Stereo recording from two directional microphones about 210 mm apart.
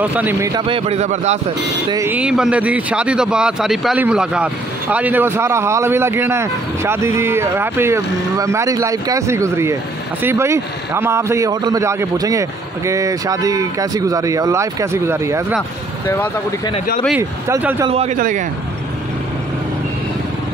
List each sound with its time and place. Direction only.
0.0 s speech: 10° right (ahead or behind); by 1.4 s 35° right (ahead or behind)
1.9 s speech: 10° right (ahead or behind)
16.1 s speech: 15° left (ahead or behind)
17.2 s speech: 10° right (ahead or behind)
17.8 s a man's voice: 30° right (ahead or behind)